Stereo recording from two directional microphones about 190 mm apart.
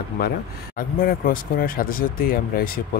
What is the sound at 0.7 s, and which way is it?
Speech, 50° left (ahead or behind).